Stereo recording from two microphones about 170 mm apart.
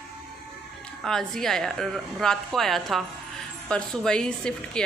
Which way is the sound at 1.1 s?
5° left (ahead or behind).